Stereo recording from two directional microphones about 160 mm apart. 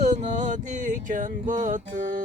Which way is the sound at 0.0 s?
50° right (ahead or behind).